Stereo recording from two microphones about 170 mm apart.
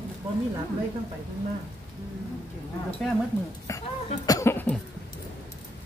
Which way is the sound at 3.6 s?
20° left (ahead or behind).